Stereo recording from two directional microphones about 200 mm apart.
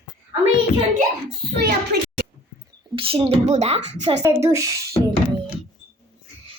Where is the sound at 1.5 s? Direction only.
50° right (ahead or behind).